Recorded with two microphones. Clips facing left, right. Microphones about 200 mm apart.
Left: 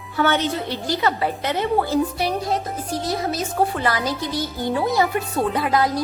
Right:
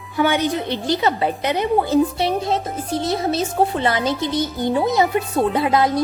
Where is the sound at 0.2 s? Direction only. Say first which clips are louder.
Right 2 dB; 15° right (ahead or behind).